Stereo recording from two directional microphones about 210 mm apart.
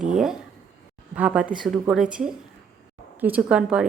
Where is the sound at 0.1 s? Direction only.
Centre (ahead or behind).